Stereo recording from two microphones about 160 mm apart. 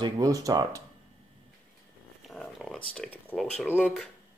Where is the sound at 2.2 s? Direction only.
Centre (ahead or behind).